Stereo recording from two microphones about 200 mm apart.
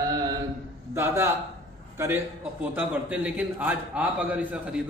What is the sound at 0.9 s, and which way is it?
A man's voice, 15° right (ahead or behind).